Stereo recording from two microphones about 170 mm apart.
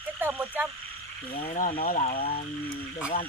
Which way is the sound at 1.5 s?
55° left (ahead or behind).